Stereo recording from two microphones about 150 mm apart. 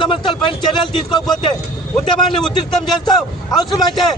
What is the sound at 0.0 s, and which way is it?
Speech, 30° left (ahead or behind).